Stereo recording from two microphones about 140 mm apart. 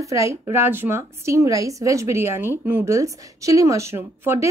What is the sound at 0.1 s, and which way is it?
Speech, 20° right (ahead or behind).